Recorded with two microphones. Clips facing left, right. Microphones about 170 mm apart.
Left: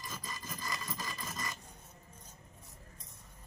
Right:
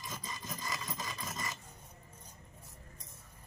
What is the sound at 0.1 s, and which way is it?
Rub, 20° right (ahead or behind).